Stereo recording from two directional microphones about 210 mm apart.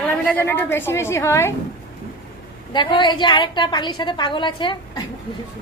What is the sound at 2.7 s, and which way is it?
A woman's voice, 20° left (ahead or behind).